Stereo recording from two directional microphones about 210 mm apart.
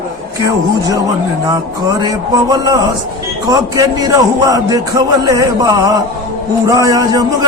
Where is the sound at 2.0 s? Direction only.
20° right (ahead or behind).